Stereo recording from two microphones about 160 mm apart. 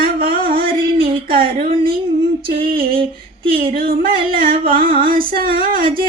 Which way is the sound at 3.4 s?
35° right (ahead or behind).